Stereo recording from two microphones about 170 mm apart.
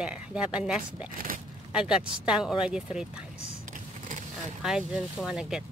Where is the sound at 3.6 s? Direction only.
50° right (ahead or behind).